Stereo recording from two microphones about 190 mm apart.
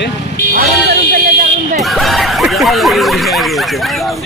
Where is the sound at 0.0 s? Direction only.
65° left (ahead or behind).